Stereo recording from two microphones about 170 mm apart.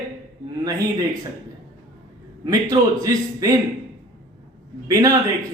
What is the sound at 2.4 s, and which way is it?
Speech, 20° right (ahead or behind).